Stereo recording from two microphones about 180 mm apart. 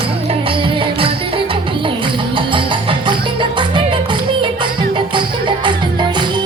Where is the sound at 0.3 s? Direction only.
30° right (ahead or behind).